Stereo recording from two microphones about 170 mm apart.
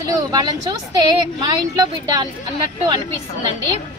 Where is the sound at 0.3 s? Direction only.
25° right (ahead or behind).